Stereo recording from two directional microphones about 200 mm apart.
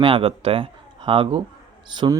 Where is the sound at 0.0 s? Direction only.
25° right (ahead or behind).